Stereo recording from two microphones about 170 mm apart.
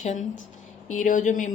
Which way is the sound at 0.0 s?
45° left (ahead or behind).